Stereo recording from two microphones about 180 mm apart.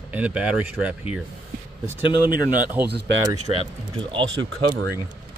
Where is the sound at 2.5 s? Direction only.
10° right (ahead or behind).